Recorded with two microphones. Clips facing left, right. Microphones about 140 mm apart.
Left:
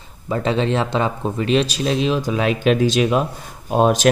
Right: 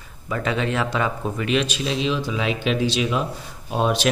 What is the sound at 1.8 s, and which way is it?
Speech, 45° left (ahead or behind).